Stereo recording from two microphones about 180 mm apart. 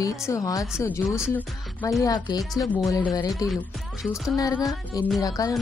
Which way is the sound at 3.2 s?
20° left (ahead or behind).